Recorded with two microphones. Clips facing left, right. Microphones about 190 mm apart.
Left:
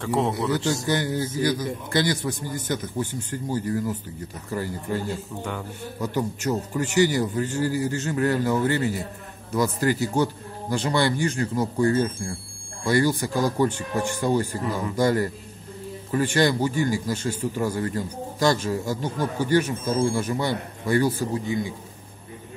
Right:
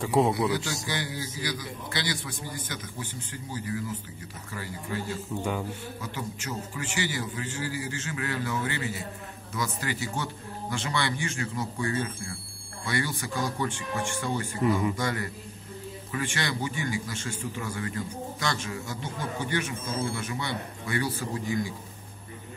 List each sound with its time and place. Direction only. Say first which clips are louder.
0.0 s a man's voice: even; 5° right (ahead or behind)
0.8 s a man's voice: left 9 dB; 45° left (ahead or behind)
5.4 s a man's voice: right 1 dB; 15° right (ahead or behind)
6.7 s a man's voice: left 12 dB; 40° left (ahead or behind)
21.5 s a man's voice: left 3 dB; 25° left (ahead or behind)